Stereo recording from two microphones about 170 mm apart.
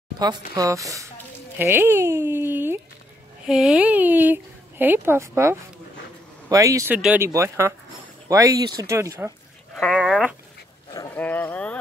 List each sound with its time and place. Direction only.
0.2 s speech: 25° right (ahead or behind)
7.0 s speech: 10° right (ahead or behind)
9.8 s speech: 5° left (ahead or behind)
11.1 s speech: 10° left (ahead or behind)